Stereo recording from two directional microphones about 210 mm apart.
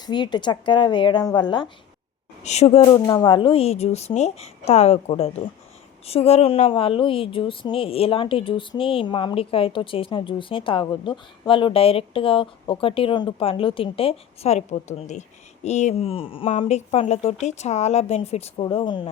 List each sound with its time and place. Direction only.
0.0 s a woman's voice: 20° left (ahead or behind)
2.4 s a woman's voice: 30° left (ahead or behind)